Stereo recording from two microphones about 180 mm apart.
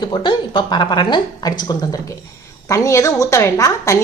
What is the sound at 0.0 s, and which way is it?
A woman's voice, 25° left (ahead or behind).